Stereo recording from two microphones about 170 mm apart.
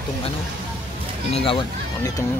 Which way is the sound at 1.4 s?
30° left (ahead or behind).